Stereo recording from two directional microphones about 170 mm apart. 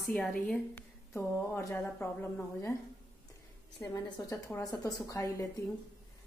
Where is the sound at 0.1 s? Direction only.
5° left (ahead or behind).